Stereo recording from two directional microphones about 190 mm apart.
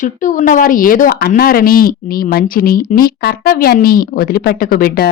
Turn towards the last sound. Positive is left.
turn(degrees=50)  # may be behind; listen again after turning